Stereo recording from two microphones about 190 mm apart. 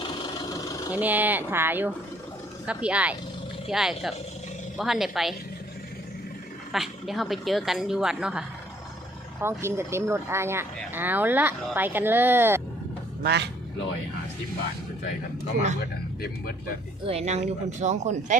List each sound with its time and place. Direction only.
0.9 s a woman's voice: 10° right (ahead or behind)
6.7 s a woman's voice: centre (ahead or behind)
13.2 s speech: 60° right (ahead or behind)
17.1 s speech: 35° right (ahead or behind)